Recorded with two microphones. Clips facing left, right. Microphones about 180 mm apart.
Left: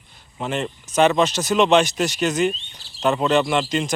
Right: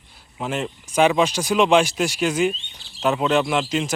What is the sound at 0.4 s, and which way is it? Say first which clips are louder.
Speech: left 1 dB; 5° right (ahead or behind).